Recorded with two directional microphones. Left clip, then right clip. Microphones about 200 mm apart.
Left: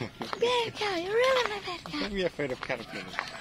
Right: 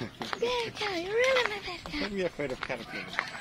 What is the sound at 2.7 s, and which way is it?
Speech, 40° left (ahead or behind).